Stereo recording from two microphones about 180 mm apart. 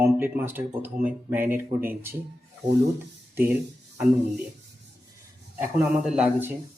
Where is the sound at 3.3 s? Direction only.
10° right (ahead or behind).